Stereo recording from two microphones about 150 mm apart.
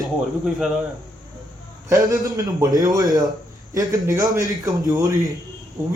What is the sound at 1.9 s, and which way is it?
A man's voice, 25° right (ahead or behind).